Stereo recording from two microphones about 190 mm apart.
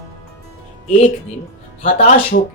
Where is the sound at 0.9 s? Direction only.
35° left (ahead or behind).